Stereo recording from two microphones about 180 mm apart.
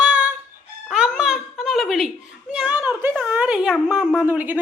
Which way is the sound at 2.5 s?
5° right (ahead or behind).